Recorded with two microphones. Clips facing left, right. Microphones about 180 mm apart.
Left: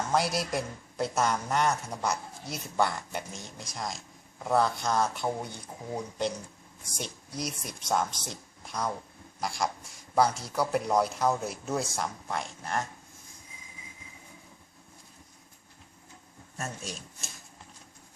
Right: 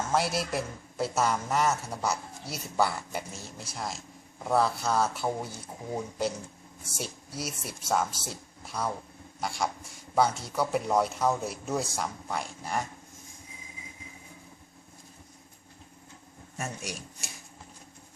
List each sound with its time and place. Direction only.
0.1 s a man's voice: centre (ahead or behind)
10.2 s speech: 30° right (ahead or behind)
10.5 s a man's voice: centre (ahead or behind)
16.6 s speech: 15° right (ahead or behind)